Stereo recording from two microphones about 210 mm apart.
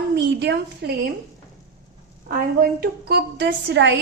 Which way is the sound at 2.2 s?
45° right (ahead or behind).